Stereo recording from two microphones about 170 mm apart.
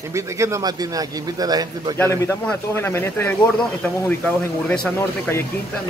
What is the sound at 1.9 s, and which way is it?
Speech, 15° left (ahead or behind).